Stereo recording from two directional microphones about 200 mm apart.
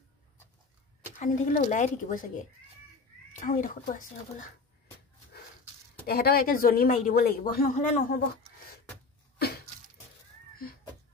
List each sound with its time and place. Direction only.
1.2 s a woman's voice: 40° left (ahead or behind)
6.0 s speech: 50° left (ahead or behind)